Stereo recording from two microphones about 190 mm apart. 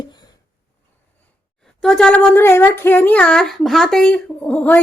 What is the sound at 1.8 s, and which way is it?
Speech, 5° left (ahead or behind).